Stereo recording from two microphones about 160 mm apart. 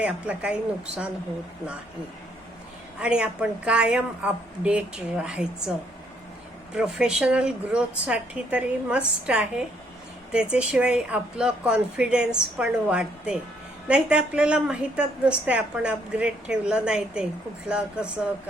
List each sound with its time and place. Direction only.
0.0 s a woman's voice: 5° right (ahead or behind)
3.0 s a woman's voice: 5° right (ahead or behind)
6.7 s a woman's voice: 5° right (ahead or behind)